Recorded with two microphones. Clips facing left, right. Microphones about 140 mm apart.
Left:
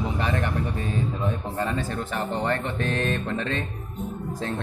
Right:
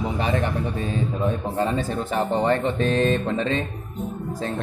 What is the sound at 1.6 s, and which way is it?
Speech, 20° right (ahead or behind).